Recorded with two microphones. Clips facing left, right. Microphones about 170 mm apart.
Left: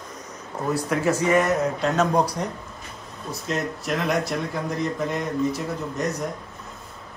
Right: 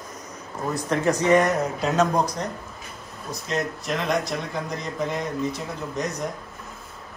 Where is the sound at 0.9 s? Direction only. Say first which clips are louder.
Right 2 dB; 5° left (ahead or behind).